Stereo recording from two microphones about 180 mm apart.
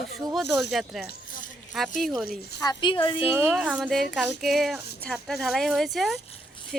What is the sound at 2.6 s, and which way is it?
Speech, 25° left (ahead or behind).